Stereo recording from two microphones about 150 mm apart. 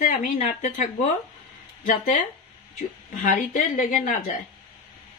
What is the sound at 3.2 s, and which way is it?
Speech, 65° left (ahead or behind).